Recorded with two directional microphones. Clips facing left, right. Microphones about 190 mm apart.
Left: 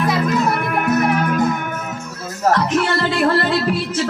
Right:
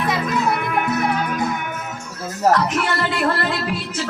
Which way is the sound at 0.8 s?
50° left (ahead or behind).